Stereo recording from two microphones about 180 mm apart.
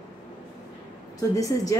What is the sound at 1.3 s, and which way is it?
Speech, 20° left (ahead or behind).